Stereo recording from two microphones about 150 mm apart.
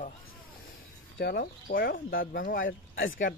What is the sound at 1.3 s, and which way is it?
Speech, 90° left.